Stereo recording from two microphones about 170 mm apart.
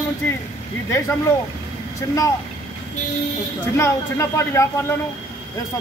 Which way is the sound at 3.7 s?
15° left (ahead or behind).